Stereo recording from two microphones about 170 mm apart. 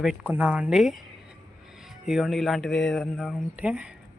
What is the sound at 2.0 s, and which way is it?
Speech, centre (ahead or behind).